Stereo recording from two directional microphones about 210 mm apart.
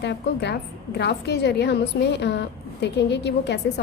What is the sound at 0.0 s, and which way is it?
A woman's voice, 55° left (ahead or behind).